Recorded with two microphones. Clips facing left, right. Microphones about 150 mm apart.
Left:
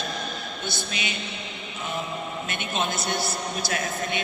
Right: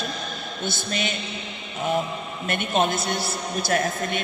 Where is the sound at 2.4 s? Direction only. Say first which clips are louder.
Right 8 dB; 50° right (ahead or behind).